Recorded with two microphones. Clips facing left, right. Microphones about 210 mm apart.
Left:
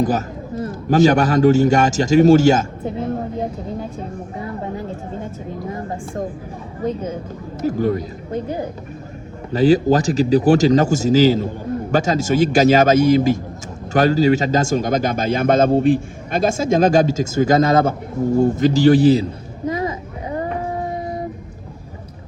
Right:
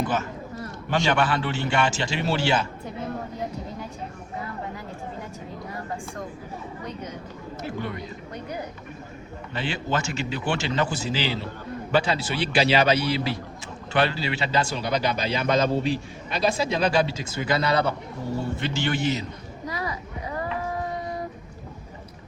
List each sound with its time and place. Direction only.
0.0 s speech: 40° left (ahead or behind)
7.6 s speech: 40° left (ahead or behind)
9.5 s speech: 40° left (ahead or behind)
19.6 s a sound: 25° left (ahead or behind)